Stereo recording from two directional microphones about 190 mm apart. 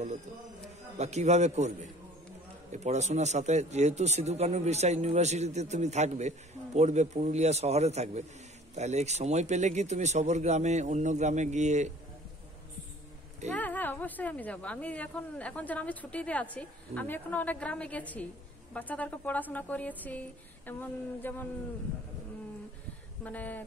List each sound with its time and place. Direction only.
0.9 s speech: 35° right (ahead or behind)
2.7 s speech: 35° right (ahead or behind)
13.6 s a woman's voice: 10° left (ahead or behind)
23.2 s a woman's voice: 10° left (ahead or behind)